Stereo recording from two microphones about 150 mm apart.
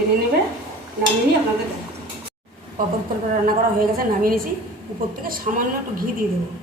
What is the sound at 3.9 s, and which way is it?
A woman's voice, 70° right (ahead or behind).